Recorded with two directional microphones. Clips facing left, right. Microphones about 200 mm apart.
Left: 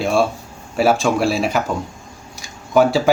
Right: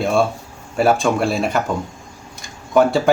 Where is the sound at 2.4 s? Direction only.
Centre (ahead or behind).